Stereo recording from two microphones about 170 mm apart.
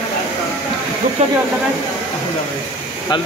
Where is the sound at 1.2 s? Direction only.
40° right (ahead or behind).